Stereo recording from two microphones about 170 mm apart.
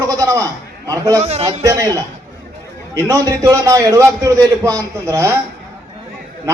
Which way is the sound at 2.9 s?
20° right (ahead or behind).